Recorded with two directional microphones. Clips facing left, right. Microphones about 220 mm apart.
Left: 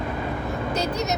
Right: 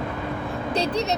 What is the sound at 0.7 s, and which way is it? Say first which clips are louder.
Speech: right 3 dB; 30° right (ahead or behind).